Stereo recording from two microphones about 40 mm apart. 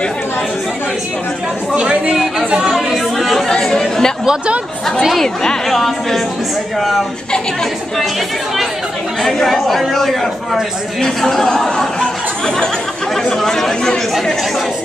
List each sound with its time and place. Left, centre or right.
1.8 s speech: right
2.7 s chatter: centre
3.4 s chatter: centre
5.2 s a man's voice: centre
5.7 s a woman's voice: centre
9.2 s a man's voice: centre